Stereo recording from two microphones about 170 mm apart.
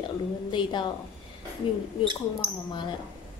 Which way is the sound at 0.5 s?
25° left (ahead or behind).